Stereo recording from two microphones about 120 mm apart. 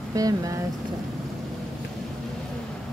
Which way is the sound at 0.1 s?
30° right (ahead or behind).